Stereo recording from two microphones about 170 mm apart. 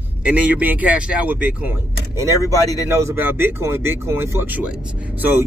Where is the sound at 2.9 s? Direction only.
15° right (ahead or behind).